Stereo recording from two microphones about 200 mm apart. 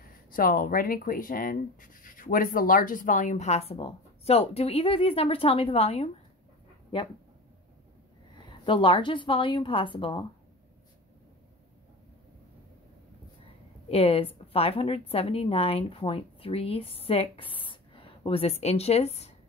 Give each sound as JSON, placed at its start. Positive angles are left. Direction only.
{"t": 0.3, "sound": "a woman's voice", "side_deg": 45}
{"t": 8.5, "sound": "a woman's voice", "side_deg": 25}
{"t": 13.8, "sound": "a woman's voice", "side_deg": 30}